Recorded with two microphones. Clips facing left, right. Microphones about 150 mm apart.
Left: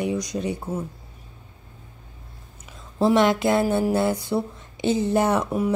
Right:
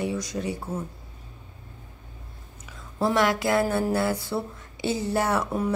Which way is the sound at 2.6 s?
20° left (ahead or behind).